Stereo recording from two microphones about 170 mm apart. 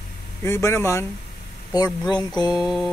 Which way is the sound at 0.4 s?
15° left (ahead or behind).